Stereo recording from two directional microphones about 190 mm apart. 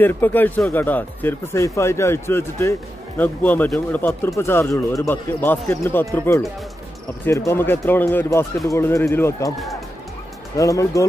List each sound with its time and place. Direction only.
0.0 s speech: 10° left (ahead or behind)
10.6 s speech: 15° left (ahead or behind)